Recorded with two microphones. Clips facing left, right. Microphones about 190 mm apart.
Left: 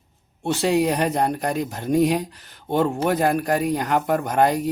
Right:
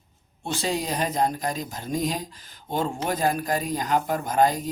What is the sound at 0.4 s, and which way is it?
Speech, 65° left (ahead or behind).